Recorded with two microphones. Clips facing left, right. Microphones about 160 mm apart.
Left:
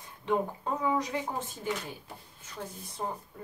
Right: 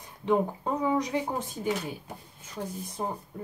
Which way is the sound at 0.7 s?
20° right (ahead or behind).